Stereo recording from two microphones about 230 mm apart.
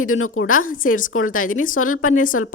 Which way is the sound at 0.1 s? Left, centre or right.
Left.